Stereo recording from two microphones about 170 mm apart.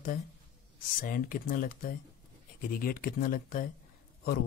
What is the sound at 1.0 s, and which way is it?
Speech, 55° left (ahead or behind).